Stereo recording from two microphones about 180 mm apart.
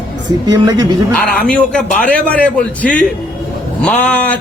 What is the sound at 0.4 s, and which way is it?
Speech, 20° right (ahead or behind).